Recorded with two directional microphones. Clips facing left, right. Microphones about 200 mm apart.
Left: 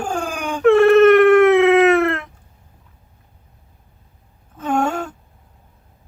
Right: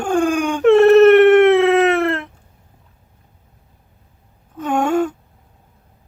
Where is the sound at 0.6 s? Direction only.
25° right (ahead or behind).